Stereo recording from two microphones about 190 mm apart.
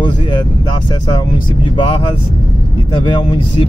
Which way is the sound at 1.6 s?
25° left (ahead or behind).